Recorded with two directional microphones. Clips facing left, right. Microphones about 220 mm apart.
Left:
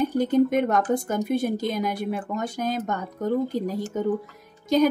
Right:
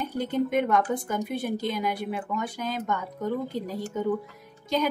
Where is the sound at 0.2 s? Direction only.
45° left (ahead or behind).